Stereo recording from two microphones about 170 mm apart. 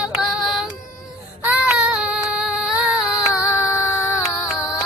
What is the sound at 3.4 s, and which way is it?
Music, 15° left (ahead or behind).